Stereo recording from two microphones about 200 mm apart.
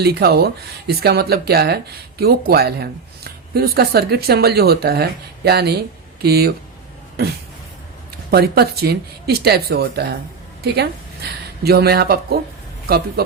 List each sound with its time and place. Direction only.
0.0 s speech: 50° right (ahead or behind)
8.3 s speech: 50° right (ahead or behind)